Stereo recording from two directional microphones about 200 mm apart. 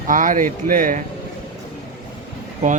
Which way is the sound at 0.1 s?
40° right (ahead or behind).